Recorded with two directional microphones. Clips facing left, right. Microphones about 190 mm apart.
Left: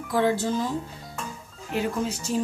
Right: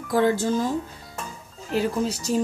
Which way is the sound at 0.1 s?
45° right (ahead or behind).